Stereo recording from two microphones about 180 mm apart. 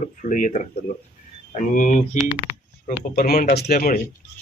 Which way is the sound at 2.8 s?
55° left (ahead or behind).